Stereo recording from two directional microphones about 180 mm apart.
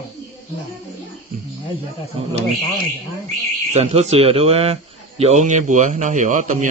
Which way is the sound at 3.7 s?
35° right (ahead or behind).